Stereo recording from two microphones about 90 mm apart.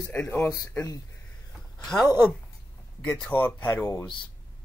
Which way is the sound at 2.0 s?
45° left (ahead or behind).